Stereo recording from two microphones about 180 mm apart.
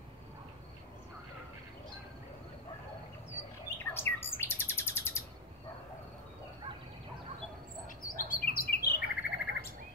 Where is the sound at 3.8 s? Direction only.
10° left (ahead or behind).